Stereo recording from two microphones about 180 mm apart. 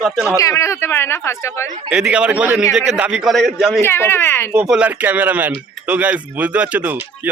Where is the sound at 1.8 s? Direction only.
5° right (ahead or behind).